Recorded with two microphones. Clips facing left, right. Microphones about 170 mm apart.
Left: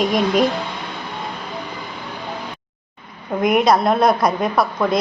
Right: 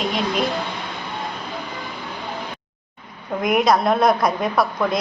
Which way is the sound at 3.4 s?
Centre (ahead or behind).